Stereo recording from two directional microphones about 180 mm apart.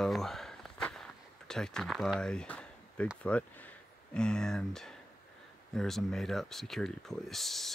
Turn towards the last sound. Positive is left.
turn(degrees=0)  # may be behind; listen again after turning